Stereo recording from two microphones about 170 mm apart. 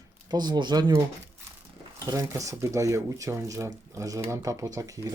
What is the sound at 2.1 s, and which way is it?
Speech, 20° right (ahead or behind).